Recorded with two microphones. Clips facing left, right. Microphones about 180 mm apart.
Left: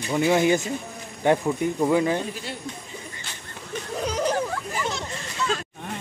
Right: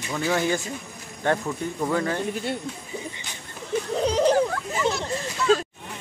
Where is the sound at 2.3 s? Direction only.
55° right (ahead or behind).